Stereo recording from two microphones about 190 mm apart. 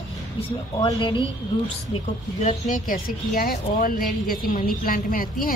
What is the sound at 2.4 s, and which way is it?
Speech, 40° left (ahead or behind).